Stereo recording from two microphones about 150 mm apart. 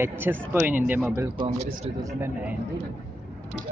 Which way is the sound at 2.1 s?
15° right (ahead or behind).